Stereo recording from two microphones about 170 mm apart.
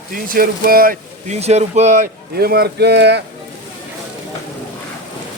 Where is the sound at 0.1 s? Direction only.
55° right (ahead or behind).